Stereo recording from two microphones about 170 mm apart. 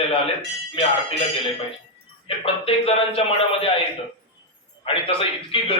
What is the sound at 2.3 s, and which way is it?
A man's voice, 35° left (ahead or behind).